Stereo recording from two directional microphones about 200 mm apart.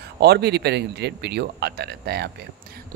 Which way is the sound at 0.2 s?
55° right (ahead or behind).